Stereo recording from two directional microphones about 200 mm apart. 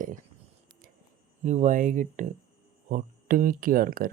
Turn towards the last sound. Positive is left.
turn(degrees=-45)  # may be behind; listen again after turning